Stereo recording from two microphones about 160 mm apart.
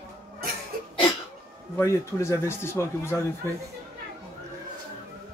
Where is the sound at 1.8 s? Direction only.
15° left (ahead or behind).